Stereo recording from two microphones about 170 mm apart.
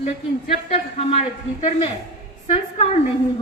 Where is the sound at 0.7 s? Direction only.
40° left (ahead or behind).